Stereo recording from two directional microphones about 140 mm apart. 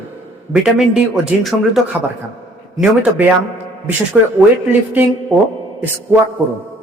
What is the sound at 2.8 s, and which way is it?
Speech, 10° right (ahead or behind).